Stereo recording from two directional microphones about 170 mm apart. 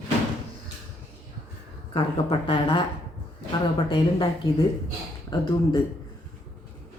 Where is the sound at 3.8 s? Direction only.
25° left (ahead or behind).